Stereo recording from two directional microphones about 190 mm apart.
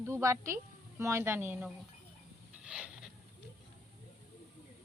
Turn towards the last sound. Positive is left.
turn(degrees=-5)  # may be behind; listen again after turning